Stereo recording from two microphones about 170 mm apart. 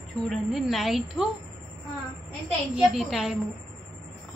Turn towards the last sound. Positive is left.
turn(degrees=0)  # may be behind; listen again after turning